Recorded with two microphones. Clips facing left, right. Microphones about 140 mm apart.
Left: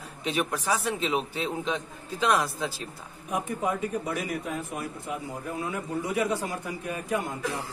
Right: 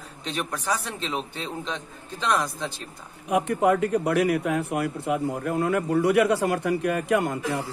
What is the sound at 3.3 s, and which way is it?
Speech, 75° right (ahead or behind).